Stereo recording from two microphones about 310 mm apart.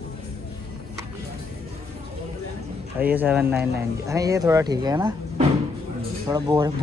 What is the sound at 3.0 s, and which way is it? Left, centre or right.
A man's voice, centre.